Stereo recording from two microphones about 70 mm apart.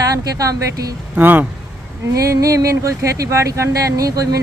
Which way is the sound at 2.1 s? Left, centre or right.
Right.